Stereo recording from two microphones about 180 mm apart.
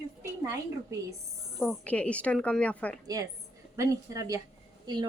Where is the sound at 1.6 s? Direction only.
5° left (ahead or behind).